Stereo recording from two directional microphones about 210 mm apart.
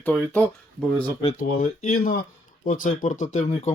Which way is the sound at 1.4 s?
40° left (ahead or behind).